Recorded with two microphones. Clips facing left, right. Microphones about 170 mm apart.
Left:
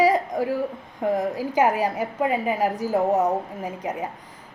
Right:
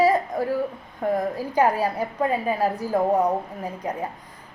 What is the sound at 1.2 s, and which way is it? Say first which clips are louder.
A woman's voice: even; 15° left (ahead or behind).